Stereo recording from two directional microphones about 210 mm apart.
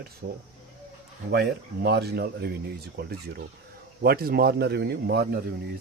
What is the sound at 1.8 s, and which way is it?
Speech, 50° right (ahead or behind).